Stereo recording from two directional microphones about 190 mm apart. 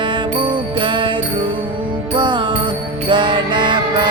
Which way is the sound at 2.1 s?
25° right (ahead or behind).